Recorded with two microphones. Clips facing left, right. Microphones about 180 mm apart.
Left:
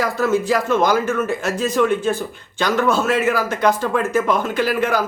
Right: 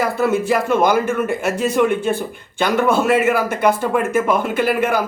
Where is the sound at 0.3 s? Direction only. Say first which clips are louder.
Even; 55° right (ahead or behind).